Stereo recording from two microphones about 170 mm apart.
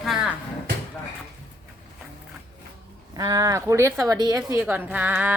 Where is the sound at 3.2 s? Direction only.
20° right (ahead or behind).